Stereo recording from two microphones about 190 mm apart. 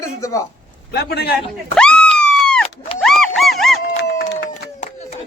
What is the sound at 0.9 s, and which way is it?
Speech, 55° left (ahead or behind).